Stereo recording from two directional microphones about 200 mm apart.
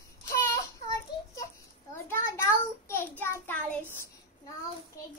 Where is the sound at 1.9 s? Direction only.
15° left (ahead or behind).